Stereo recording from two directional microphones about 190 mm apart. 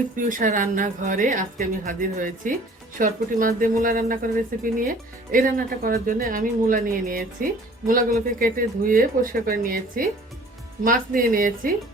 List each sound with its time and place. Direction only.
0.2 s speech: 45° right (ahead or behind)